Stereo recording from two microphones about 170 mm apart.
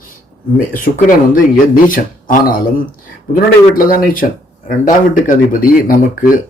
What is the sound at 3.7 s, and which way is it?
Speech, 55° left (ahead or behind).